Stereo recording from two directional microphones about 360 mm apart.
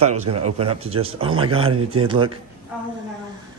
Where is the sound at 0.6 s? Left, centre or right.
Centre.